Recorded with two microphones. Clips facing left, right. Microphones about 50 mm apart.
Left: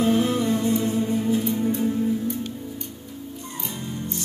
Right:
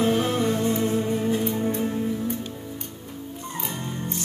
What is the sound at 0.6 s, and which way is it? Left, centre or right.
Music, right.